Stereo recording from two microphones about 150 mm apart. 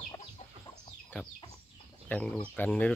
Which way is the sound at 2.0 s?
10° left (ahead or behind).